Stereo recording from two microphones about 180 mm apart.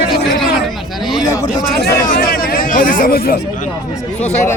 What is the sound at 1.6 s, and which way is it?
Speech, 60° left (ahead or behind).